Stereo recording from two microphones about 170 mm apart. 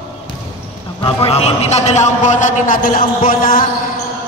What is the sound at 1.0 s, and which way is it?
A man's voice, 35° left (ahead or behind).